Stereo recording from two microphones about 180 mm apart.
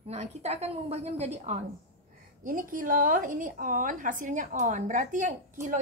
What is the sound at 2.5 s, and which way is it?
A woman's voice, 50° right (ahead or behind).